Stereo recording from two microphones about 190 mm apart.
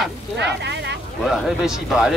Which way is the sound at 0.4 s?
65° right (ahead or behind).